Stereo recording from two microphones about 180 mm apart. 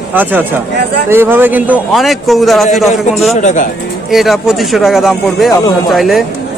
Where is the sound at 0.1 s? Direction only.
10° right (ahead or behind).